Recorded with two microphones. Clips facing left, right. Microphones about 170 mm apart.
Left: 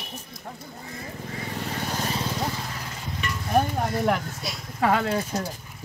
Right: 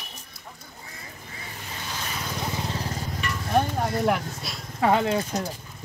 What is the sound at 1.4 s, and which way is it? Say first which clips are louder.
Vehicle: left 8 dB; 65° left (ahead or behind).